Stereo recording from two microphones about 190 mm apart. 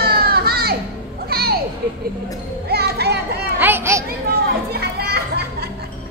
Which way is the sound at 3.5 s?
10° right (ahead or behind).